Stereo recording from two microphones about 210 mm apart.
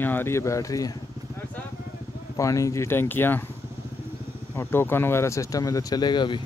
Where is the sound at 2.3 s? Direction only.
15° left (ahead or behind).